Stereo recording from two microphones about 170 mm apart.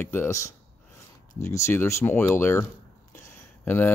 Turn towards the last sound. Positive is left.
turn(degrees=10)  # may be behind; listen again after turning